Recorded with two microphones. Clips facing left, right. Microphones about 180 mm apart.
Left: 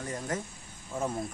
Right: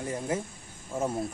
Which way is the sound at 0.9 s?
25° right (ahead or behind).